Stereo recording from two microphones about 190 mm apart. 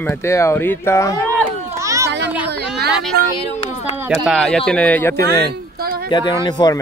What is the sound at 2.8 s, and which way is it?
Speech, 60° right (ahead or behind).